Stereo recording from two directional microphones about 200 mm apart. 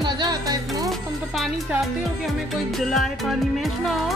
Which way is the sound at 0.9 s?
Centre (ahead or behind).